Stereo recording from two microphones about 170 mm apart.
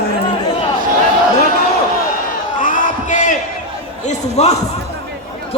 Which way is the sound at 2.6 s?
50° left (ahead or behind).